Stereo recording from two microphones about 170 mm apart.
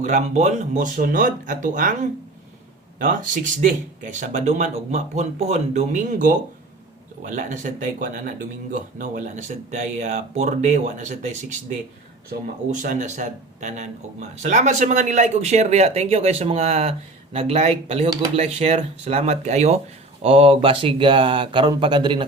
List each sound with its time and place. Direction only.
0.0 s speech: 45° right (ahead or behind); by 22.2 s 30° right (ahead or behind)